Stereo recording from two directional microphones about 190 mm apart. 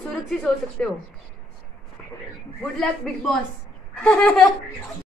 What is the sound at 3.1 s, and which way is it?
A woman's voice, centre (ahead or behind).